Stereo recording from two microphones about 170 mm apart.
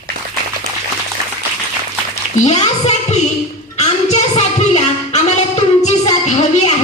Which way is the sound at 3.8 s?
40° left (ahead or behind).